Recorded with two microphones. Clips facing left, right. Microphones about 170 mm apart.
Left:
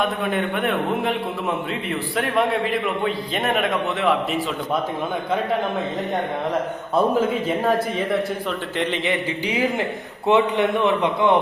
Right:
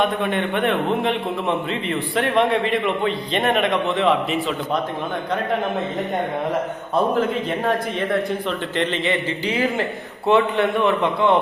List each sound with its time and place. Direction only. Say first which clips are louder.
0.0 s a man's voice: right 2 dB; 5° left (ahead or behind)
7.6 s a man's voice: left 1 dB; 5° left (ahead or behind)
8.8 s a man's voice: right 1 dB; 15° left (ahead or behind)